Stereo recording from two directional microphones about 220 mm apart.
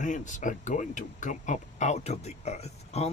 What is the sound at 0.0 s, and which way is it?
Speech, 35° left (ahead or behind).